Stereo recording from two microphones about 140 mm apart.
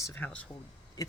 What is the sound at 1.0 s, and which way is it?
Owl, 25° left (ahead or behind).